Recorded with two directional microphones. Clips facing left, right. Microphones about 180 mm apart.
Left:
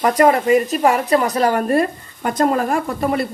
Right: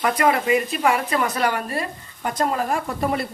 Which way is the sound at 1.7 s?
55° left (ahead or behind).